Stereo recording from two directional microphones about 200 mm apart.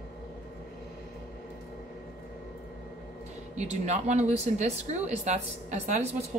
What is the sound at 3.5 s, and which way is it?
Speech, 35° right (ahead or behind).